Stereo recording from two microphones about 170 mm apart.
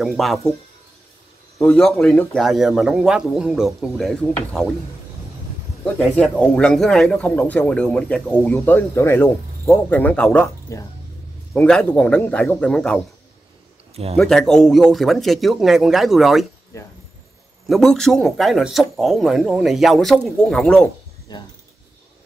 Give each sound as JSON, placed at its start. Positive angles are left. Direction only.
{"t": 0.0, "sound": "speech", "side_deg": 0}
{"t": 1.6, "sound": "speech", "side_deg": 0}
{"t": 5.9, "sound": "speech", "side_deg": 10}
{"t": 14.1, "sound": "speech", "side_deg": 0}
{"t": 16.7, "sound": "speech", "side_deg": 15}
{"t": 17.6, "sound": "speech", "side_deg": 0}
{"t": 21.3, "sound": "speech", "side_deg": 25}